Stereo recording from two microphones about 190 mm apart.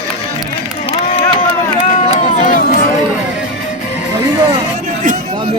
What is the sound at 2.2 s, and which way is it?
Run, 45° left (ahead or behind).